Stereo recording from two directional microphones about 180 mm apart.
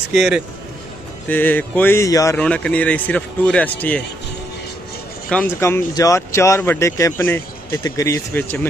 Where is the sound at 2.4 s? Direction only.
5° left (ahead or behind).